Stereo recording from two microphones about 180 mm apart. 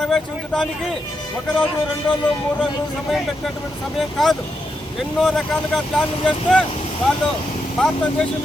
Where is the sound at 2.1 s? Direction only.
5° left (ahead or behind).